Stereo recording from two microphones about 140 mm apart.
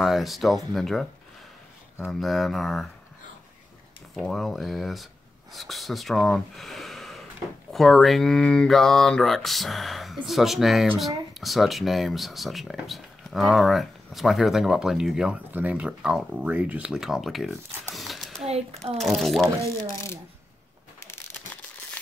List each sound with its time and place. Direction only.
0.0 s speech: centre (ahead or behind)
2.0 s speech: centre (ahead or behind)
4.1 s speech: centre (ahead or behind)
17.9 s a sound: centre (ahead or behind)
18.9 s speech: centre (ahead or behind)
21.0 s a sound: 20° left (ahead or behind)